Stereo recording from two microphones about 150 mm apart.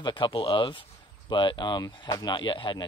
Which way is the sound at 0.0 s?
30° left (ahead or behind).